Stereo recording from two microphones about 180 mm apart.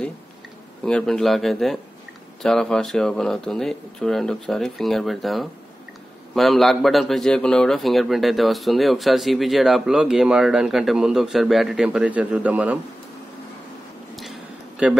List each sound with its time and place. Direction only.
0.8 s a man's voice: 5° left (ahead or behind)
14.8 s a man's voice: 5° right (ahead or behind)